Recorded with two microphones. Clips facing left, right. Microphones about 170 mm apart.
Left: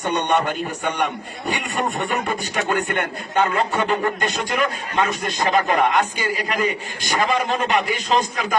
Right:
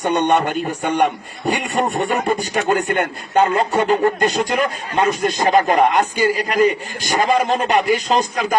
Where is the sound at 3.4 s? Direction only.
30° right (ahead or behind).